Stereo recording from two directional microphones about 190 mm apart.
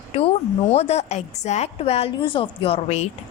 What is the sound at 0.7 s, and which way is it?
A woman's voice, 35° left (ahead or behind).